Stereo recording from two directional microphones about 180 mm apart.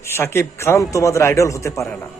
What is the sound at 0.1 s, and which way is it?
A man's voice, 15° left (ahead or behind).